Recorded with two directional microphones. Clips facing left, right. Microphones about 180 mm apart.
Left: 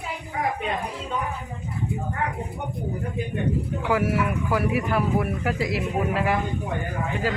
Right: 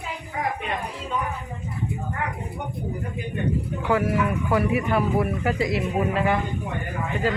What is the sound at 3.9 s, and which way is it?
Speech, 5° left (ahead or behind).